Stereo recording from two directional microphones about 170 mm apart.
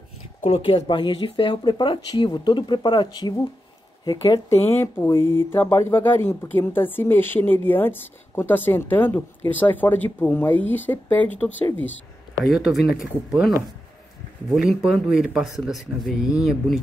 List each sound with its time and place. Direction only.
0.4 s speech: 35° left (ahead or behind)
4.6 s speech: 15° left (ahead or behind)
12.4 s speech: centre (ahead or behind)
14.5 s speech: centre (ahead or behind)